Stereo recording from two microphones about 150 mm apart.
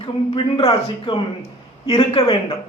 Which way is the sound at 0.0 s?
35° left (ahead or behind).